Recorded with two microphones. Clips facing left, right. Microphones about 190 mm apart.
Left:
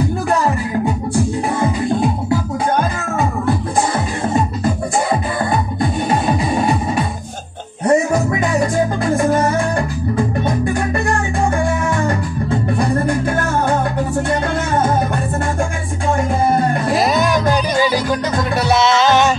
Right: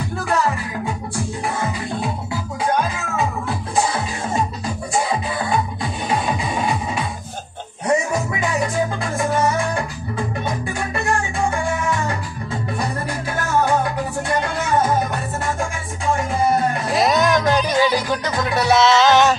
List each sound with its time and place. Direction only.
5.5 s music: 45° left (ahead or behind)
12.1 s music: 55° left (ahead or behind)
17.0 s music: 5° left (ahead or behind)